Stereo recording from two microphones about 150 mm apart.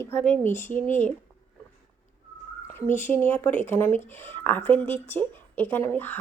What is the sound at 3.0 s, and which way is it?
A woman's voice, 15° left (ahead or behind).